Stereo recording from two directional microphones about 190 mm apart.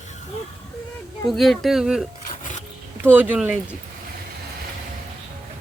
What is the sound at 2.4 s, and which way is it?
Wild animals, 40° left (ahead or behind).